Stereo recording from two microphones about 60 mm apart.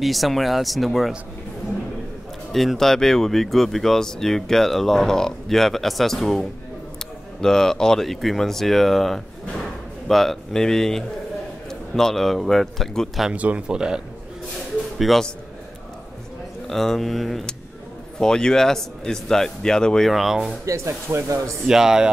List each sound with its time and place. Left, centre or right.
0.0 s speech: centre
2.5 s speech: centre
7.4 s speech: centre
13.3 s speech: right
15.0 s speech: centre
16.6 s speech: centre
20.1 s speech: centre
20.6 s speech: right
21.6 s speech: centre